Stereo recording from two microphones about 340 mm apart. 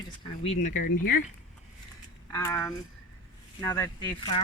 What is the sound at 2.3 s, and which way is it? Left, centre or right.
Speech, centre.